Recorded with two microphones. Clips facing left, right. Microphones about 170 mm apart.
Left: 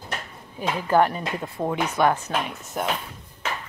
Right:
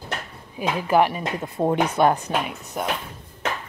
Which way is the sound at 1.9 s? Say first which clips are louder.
Even; 20° right (ahead or behind).